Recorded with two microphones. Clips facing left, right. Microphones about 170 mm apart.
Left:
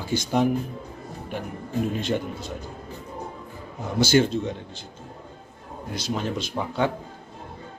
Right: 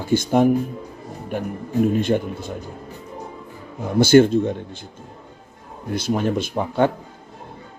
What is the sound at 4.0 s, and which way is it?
Speech, 55° right (ahead or behind).